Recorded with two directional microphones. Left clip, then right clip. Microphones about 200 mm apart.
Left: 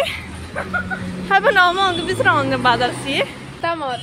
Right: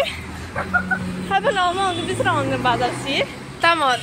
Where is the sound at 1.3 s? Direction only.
25° left (ahead or behind); by 3.2 s 10° left (ahead or behind).